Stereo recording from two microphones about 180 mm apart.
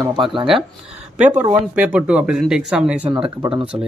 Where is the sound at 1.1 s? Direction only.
10° right (ahead or behind).